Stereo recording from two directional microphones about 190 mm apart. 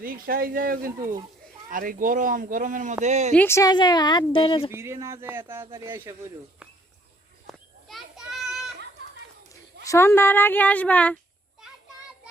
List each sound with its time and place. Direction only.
0.0 s speech: 50° right (ahead or behind)
3.3 s speech: 15° left (ahead or behind)
4.7 s speech: 15° right (ahead or behind)
7.4 s children playing: centre (ahead or behind)
9.8 s a woman's voice: 15° left (ahead or behind)